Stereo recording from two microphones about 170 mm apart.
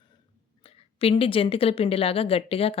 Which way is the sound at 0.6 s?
35° left (ahead or behind).